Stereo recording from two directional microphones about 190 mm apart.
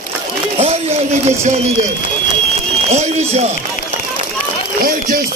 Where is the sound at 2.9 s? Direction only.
35° right (ahead or behind).